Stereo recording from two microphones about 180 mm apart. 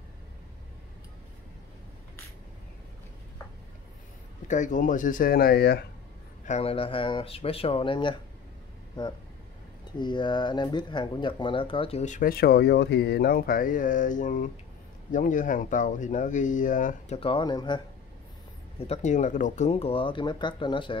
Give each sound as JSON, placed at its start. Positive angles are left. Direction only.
{"t": 4.5, "sound": "speech", "side_deg": 45}
{"t": 6.4, "sound": "speech", "side_deg": 35}
{"t": 9.9, "sound": "speech", "side_deg": 25}
{"t": 17.2, "sound": "speech", "side_deg": 25}
{"t": 18.8, "sound": "speech", "side_deg": 40}